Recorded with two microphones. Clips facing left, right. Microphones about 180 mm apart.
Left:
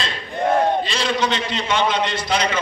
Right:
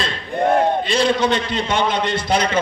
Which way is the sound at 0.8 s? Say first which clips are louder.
Right 5 dB; 55° right (ahead or behind).